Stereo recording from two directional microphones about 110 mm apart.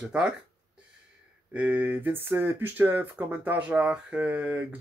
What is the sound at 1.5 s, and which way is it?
Speech, 15° right (ahead or behind).